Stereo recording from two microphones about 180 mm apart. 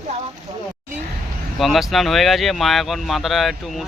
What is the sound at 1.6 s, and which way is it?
Speech, centre (ahead or behind).